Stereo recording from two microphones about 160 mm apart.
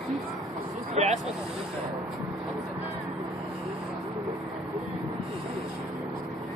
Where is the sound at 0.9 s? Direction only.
45° right (ahead or behind).